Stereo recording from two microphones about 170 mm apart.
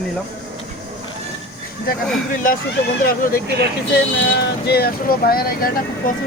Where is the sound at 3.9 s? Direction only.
70° left (ahead or behind).